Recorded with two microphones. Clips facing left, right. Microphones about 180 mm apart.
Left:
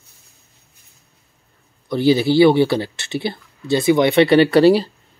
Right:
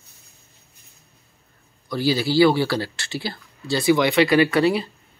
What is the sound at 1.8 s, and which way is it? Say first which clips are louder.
Speech: left 6 dB; 20° left (ahead or behind).